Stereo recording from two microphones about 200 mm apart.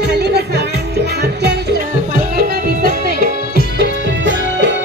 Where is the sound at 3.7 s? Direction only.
60° right (ahead or behind).